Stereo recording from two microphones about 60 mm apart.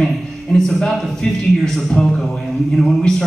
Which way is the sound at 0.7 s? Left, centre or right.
Centre.